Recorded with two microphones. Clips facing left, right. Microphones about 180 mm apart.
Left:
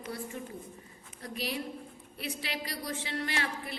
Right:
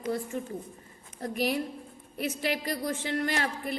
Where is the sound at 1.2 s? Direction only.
50° right (ahead or behind).